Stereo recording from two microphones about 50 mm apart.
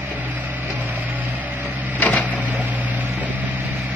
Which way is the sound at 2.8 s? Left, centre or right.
Right.